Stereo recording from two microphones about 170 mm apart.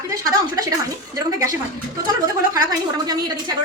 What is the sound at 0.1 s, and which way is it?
Speech, 20° right (ahead or behind).